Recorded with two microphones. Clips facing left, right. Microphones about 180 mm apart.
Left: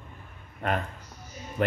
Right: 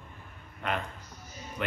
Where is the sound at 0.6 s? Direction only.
45° left (ahead or behind).